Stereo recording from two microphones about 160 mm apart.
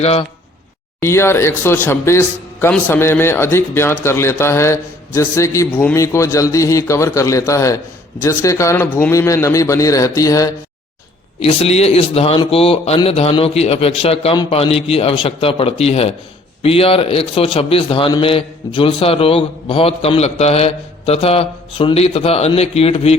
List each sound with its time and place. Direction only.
0.0 s a man's voice: 40° left (ahead or behind)
1.0 s a man's voice: 15° left (ahead or behind)
11.3 s a man's voice: 40° left (ahead or behind)